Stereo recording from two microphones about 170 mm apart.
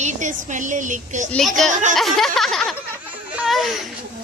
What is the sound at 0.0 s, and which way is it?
Speech, 45° right (ahead or behind).